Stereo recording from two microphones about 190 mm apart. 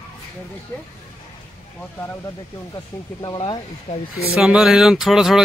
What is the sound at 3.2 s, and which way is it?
Speech, 25° left (ahead or behind).